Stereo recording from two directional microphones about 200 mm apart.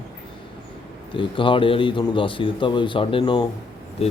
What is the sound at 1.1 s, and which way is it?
A man's voice, 25° left (ahead or behind).